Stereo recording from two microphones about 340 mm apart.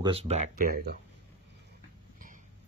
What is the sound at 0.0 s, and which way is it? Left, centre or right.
Speech, centre.